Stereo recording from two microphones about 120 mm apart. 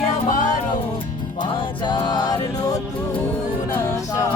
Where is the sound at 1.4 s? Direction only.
45° left (ahead or behind).